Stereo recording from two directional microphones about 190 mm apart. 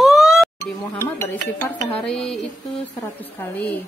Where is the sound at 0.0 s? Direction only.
Centre (ahead or behind).